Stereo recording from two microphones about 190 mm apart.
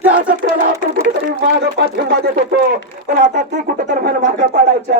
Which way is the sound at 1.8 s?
70° right (ahead or behind).